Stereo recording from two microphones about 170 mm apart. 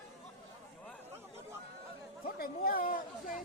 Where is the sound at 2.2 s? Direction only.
60° left (ahead or behind).